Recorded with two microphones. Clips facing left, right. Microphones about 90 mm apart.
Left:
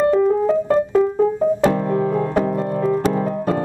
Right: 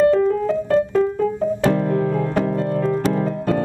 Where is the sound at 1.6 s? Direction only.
20° left (ahead or behind).